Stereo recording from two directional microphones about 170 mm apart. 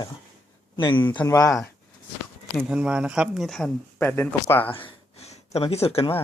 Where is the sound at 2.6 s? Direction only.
5° right (ahead or behind); by 4.7 s 10° left (ahead or behind).